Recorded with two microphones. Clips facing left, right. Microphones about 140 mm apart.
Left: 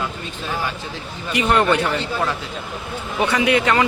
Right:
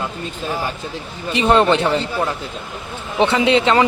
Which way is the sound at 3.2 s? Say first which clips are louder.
Right 3 dB; 25° right (ahead or behind).